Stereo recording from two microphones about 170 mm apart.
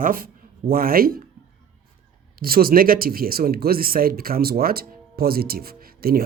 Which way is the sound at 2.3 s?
60° right (ahead or behind).